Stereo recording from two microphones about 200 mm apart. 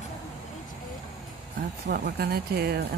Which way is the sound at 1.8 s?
50° right (ahead or behind).